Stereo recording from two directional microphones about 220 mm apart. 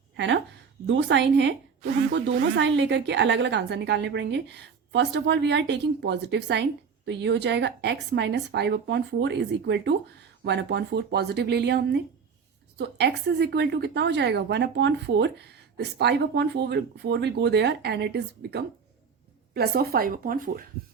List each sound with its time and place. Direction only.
0.9 s a woman's voice: 55° right (ahead or behind)